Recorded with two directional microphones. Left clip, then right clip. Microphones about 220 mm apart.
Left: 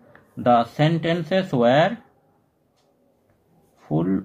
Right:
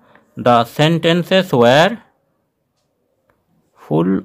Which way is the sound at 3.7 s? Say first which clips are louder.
Right 7 dB; 45° right (ahead or behind).